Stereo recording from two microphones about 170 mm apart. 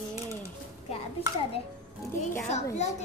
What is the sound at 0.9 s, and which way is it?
Speech, 35° left (ahead or behind).